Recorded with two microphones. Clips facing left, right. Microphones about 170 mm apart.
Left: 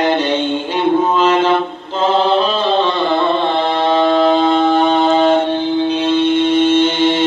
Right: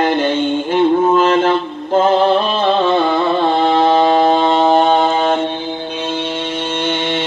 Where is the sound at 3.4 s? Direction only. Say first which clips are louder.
Right 3 dB; 45° right (ahead or behind).